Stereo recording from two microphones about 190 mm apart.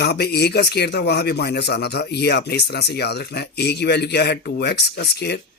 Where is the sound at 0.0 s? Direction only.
60° left (ahead or behind).